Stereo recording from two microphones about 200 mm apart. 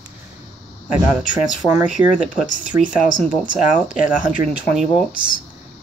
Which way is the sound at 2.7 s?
15° right (ahead or behind).